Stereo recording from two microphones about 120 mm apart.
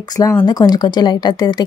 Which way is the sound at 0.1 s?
30° left (ahead or behind).